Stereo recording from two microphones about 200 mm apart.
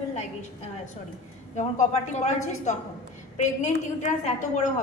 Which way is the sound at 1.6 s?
35° left (ahead or behind).